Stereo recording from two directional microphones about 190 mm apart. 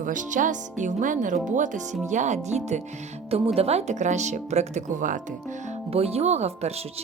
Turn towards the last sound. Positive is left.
turn(degrees=-35)  # may be behind; listen again after turning